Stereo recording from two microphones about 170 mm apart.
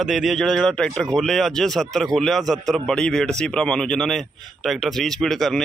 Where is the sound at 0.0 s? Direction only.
Centre (ahead or behind).